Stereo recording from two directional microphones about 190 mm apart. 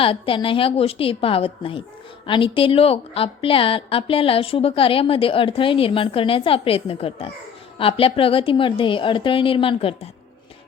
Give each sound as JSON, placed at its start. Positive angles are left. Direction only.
{"t": 0.0, "sound": "a woman's voice", "side_deg": 30}